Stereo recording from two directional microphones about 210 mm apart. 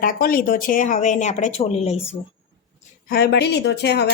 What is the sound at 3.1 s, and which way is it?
Speech, 50° left (ahead or behind).